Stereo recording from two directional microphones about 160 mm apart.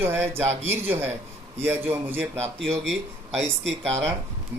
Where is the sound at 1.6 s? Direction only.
15° right (ahead or behind).